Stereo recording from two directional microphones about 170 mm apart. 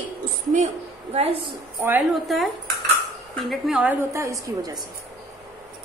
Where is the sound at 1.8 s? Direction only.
10° right (ahead or behind).